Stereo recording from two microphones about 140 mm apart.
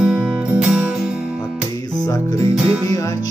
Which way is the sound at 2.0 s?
25° left (ahead or behind).